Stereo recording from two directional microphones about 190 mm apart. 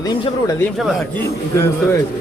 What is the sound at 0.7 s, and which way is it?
Speech, centre (ahead or behind).